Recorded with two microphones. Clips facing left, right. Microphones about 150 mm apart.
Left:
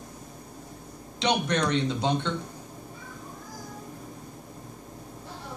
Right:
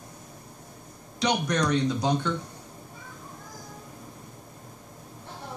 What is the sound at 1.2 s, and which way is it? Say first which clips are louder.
Speech: even; 25° left (ahead or behind).